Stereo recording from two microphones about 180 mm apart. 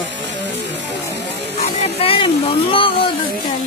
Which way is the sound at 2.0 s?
30° left (ahead or behind).